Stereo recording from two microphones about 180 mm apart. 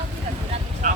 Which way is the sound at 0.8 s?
45° right (ahead or behind).